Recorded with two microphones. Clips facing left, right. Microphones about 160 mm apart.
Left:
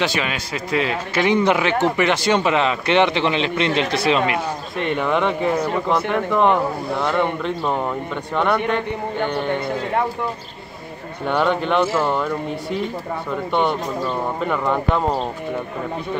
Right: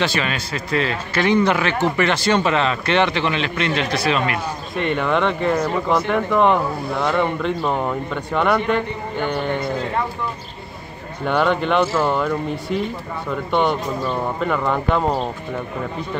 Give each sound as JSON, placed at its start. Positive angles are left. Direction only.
{"t": 0.0, "sound": "a man's voice", "side_deg": 15}
{"t": 4.7, "sound": "speech", "side_deg": 0}
{"t": 11.2, "sound": "speech", "side_deg": 0}